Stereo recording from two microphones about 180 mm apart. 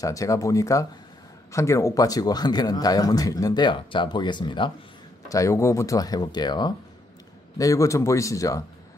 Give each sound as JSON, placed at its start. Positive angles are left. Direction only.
{"t": 0.0, "sound": "a man's voice", "side_deg": 20}